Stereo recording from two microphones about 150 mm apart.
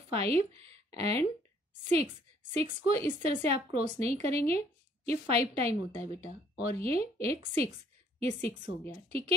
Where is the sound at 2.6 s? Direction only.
45° right (ahead or behind).